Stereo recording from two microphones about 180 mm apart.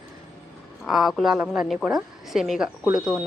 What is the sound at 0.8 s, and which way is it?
A woman's voice, centre (ahead or behind).